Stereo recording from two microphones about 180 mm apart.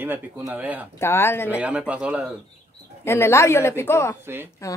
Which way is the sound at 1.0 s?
15° left (ahead or behind).